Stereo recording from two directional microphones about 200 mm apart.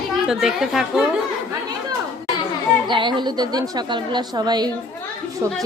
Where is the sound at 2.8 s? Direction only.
25° right (ahead or behind).